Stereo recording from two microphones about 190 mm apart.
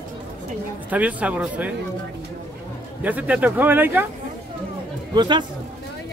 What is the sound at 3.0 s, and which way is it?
Speech, 10° right (ahead or behind).